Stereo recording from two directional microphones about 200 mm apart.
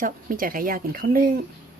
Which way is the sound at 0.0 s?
45° right (ahead or behind).